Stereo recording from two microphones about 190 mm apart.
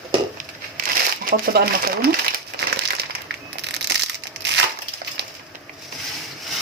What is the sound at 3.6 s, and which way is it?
Crushing, 65° right (ahead or behind).